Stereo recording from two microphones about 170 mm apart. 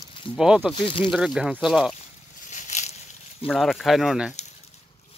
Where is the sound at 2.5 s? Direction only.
45° left (ahead or behind).